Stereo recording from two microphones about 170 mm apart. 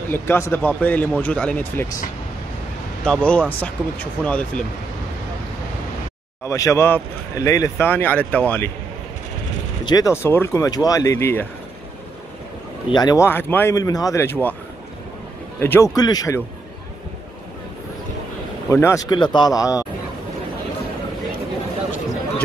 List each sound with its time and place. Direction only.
0.1 s speech: 15° left (ahead or behind)
3.0 s speech: 5° left (ahead or behind)
6.4 s speech: 20° left (ahead or behind)
9.8 s speech: 20° left (ahead or behind)
12.9 s speech: 20° left (ahead or behind)
15.6 s speech: 15° left (ahead or behind)
18.7 s speech: 15° left (ahead or behind)